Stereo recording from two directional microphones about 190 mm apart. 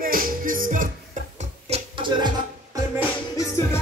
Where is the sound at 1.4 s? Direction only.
30° right (ahead or behind).